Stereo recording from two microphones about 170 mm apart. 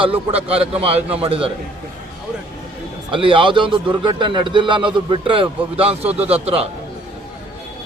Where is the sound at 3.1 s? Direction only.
30° right (ahead or behind).